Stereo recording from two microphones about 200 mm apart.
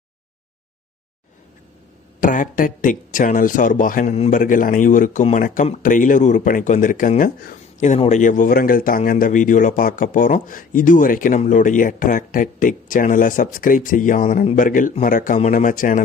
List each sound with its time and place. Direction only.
2.2 s speech: 40° left (ahead or behind)